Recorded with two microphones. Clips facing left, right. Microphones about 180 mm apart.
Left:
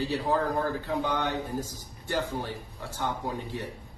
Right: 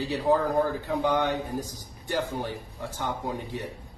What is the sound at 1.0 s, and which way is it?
A man's voice, 15° right (ahead or behind).